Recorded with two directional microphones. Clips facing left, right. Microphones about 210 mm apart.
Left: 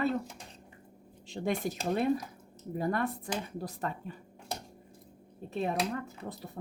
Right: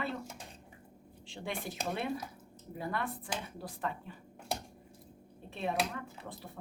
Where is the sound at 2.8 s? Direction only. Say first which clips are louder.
Left 6 dB; 45° left (ahead or behind).